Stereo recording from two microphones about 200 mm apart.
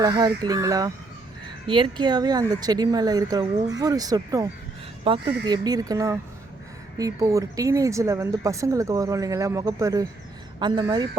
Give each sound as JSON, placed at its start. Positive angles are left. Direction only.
{"t": 0.0, "sound": "speech", "side_deg": -20}